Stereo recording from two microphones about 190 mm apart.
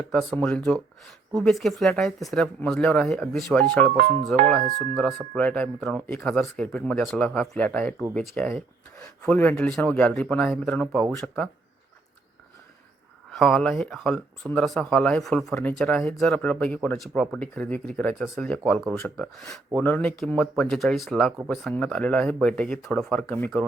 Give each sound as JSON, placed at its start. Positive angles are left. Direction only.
{"t": 0.1, "sound": "speech", "side_deg": 0}
{"t": 4.6, "sound": "speech", "side_deg": -40}
{"t": 4.9, "sound": "speech", "side_deg": 5}
{"t": 13.3, "sound": "speech", "side_deg": 0}